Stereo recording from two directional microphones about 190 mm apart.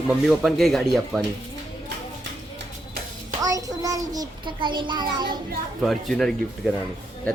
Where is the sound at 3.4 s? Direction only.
20° right (ahead or behind).